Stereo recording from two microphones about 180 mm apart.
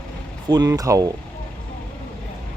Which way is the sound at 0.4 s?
20° right (ahead or behind).